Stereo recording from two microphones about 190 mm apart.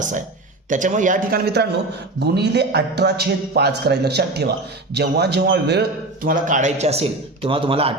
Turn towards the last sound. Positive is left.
turn(degrees=-30)  # may be behind; listen again after turning